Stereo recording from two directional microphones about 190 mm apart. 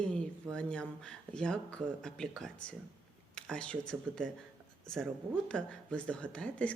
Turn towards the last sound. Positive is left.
turn(degrees=5)  # may be behind; listen again after turning